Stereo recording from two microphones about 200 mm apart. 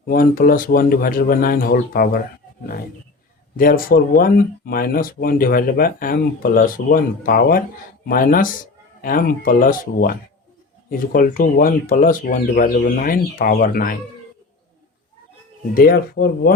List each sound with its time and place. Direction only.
0.0 s speech: 45° left (ahead or behind)
3.6 s speech: 45° left (ahead or behind)
15.7 s speech: 45° left (ahead or behind)